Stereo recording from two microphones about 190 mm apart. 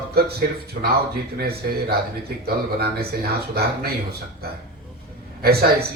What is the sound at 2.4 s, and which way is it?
Speech, 55° right (ahead or behind).